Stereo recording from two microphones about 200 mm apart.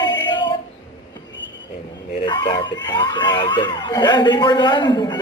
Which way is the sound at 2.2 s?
25° left (ahead or behind).